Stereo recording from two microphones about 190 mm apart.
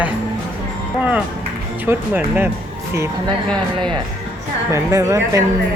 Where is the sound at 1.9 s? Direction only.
10° right (ahead or behind).